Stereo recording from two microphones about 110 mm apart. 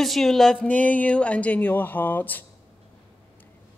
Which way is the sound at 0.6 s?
15° left (ahead or behind).